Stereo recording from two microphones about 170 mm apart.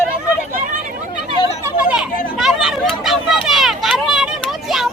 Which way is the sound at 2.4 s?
Centre (ahead or behind).